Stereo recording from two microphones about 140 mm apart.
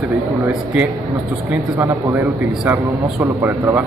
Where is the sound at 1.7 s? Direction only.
15° right (ahead or behind).